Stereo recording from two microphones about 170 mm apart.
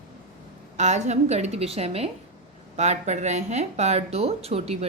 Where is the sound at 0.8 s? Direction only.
45° right (ahead or behind).